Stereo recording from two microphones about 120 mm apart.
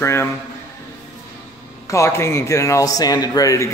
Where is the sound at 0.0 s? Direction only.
20° left (ahead or behind).